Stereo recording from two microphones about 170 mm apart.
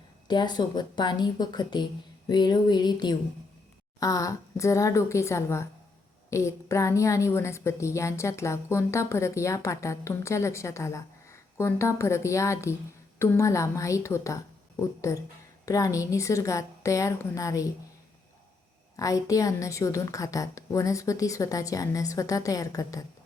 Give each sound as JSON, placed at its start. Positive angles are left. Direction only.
{"t": 0.3, "sound": "a woman's voice", "side_deg": 25}
{"t": 18.9, "sound": "a woman's voice", "side_deg": 20}